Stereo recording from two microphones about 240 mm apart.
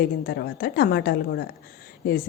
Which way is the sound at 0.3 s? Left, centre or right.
Left.